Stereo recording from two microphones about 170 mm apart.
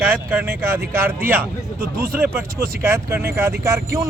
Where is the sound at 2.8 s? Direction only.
15° right (ahead or behind).